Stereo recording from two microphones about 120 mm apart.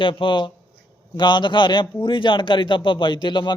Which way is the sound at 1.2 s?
40° left (ahead or behind).